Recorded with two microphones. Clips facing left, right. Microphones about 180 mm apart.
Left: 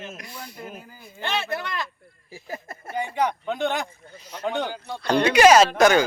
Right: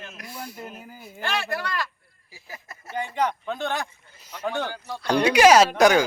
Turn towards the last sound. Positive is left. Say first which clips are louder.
# even
turn(degrees=-10)  # may be behind; listen again after turning